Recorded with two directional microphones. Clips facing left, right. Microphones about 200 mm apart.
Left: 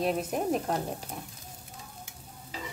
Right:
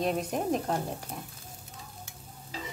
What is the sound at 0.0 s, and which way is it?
Speech, 5° left (ahead or behind).